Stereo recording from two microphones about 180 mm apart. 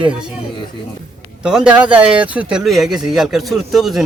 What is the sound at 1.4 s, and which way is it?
Speech, 5° right (ahead or behind).